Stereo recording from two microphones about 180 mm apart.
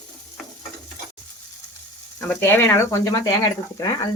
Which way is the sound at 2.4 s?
15° left (ahead or behind).